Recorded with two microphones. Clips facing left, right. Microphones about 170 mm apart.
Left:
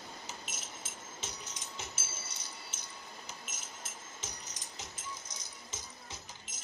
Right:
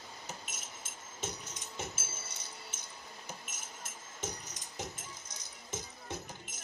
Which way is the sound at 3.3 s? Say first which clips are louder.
Right 1 dB; 55° right (ahead or behind).